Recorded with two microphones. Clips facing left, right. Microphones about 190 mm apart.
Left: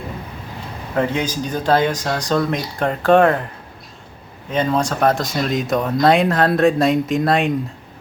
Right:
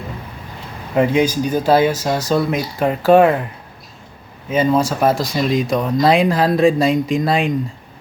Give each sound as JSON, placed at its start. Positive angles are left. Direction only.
{"t": 0.9, "sound": "speech", "side_deg": -10}
{"t": 4.4, "sound": "speech", "side_deg": -5}